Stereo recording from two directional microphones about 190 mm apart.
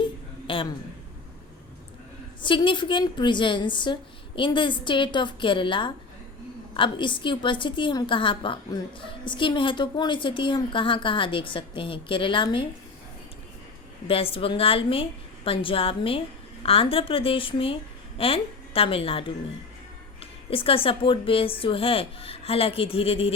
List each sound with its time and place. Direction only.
0.0 s a sound: 25° left (ahead or behind)
2.4 s a woman's voice: 25° left (ahead or behind)
14.1 s a woman's voice: 30° left (ahead or behind)
20.5 s a woman's voice: 30° left (ahead or behind)